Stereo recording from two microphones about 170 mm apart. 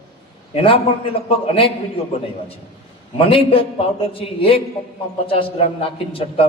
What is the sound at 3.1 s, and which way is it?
A man's voice, 35° left (ahead or behind).